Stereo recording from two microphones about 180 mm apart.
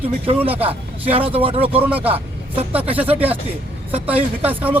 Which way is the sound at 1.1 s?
30° right (ahead or behind).